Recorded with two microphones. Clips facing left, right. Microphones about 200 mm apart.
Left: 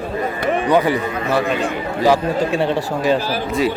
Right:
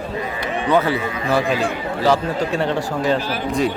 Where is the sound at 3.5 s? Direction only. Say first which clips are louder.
Left 1 dB; 5° left (ahead or behind).